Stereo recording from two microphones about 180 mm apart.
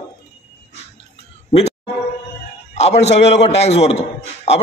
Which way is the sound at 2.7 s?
40° left (ahead or behind).